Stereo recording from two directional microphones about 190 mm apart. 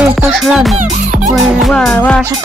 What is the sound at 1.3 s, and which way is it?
Speech, centre (ahead or behind).